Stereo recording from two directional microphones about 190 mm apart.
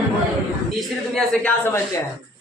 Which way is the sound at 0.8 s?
Centre (ahead or behind).